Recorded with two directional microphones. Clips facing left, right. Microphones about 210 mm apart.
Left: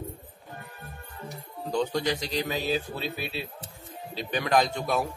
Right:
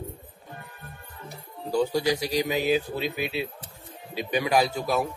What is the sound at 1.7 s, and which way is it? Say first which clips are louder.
A man's voice: right 3 dB; 10° right (ahead or behind).